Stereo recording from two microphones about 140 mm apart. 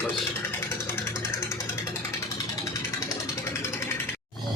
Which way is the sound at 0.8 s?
15° left (ahead or behind).